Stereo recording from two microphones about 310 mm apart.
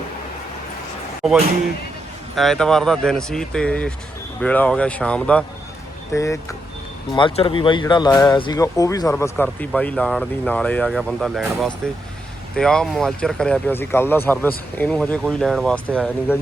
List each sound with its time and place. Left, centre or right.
1.2 s speech: centre